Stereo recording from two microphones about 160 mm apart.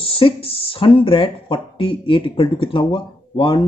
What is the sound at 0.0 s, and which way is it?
Speech, 35° left (ahead or behind).